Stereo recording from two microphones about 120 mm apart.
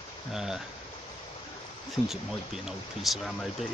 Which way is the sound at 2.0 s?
Centre (ahead or behind).